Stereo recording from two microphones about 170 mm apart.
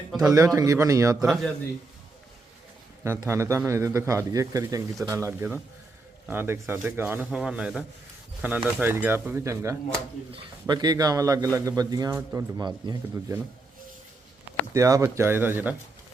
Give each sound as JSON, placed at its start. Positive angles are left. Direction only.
{"t": 0.3, "sound": "a man's voice", "side_deg": -20}
{"t": 1.2, "sound": "a man's voice", "side_deg": 0}
{"t": 3.0, "sound": "a man's voice", "side_deg": -15}
{"t": 14.7, "sound": "a man's voice", "side_deg": -20}